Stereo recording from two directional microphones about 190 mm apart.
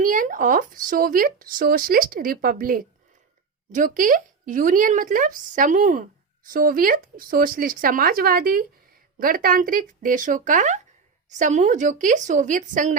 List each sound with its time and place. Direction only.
0.0 s a woman's voice: 45° right (ahead or behind)